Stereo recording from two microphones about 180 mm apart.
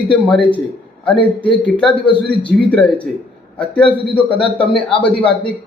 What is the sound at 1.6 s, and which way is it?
A man's voice, 5° left (ahead or behind).